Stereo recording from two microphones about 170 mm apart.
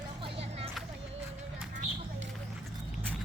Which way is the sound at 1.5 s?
55° right (ahead or behind).